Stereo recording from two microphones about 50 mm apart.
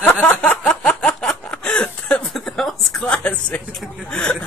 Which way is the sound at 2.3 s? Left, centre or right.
Centre.